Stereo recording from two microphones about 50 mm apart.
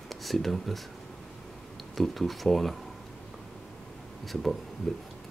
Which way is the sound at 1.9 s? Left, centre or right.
Centre.